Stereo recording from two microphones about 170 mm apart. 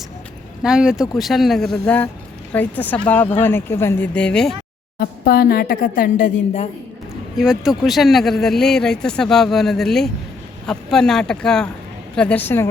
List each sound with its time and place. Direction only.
0.6 s speech: 5° right (ahead or behind)
4.9 s a woman's voice: 65° left (ahead or behind); by 6.7 s 45° left (ahead or behind)
7.3 s speech: 5° right (ahead or behind); by 12.7 s 15° left (ahead or behind)